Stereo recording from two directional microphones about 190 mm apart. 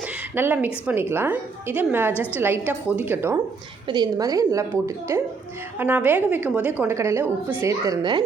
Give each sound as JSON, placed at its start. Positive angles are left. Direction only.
{"t": 0.3, "sound": "a woman's voice", "side_deg": -10}
{"t": 3.8, "sound": "a woman's voice", "side_deg": -20}